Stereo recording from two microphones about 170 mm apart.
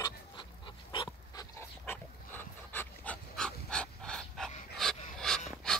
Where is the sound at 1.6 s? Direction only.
10° left (ahead or behind).